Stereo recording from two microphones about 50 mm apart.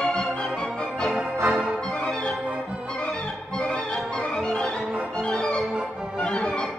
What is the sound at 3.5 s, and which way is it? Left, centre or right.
Music, centre.